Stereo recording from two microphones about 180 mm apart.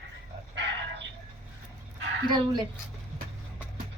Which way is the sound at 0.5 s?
80° right.